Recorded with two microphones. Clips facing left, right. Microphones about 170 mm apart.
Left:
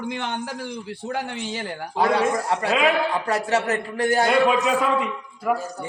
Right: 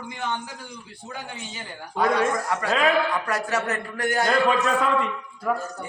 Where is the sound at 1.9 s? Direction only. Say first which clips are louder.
Left 1 dB; 30° left (ahead or behind).